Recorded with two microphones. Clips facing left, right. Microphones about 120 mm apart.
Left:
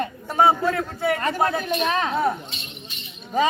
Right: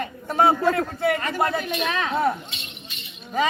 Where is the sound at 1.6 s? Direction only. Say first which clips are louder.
Left 3 dB; 35° left (ahead or behind).